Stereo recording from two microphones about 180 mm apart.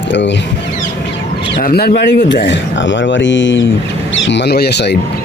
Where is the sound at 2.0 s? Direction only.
80° left.